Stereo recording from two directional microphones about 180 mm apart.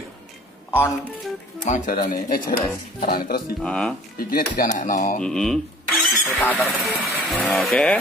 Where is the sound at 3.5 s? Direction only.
5° left (ahead or behind).